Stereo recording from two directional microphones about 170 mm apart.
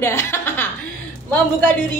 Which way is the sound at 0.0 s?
15° left (ahead or behind).